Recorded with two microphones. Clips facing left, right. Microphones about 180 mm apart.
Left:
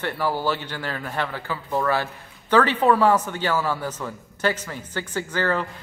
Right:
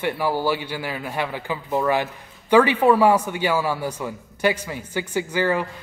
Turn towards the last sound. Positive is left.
turn(degrees=-10)  # may be behind; listen again after turning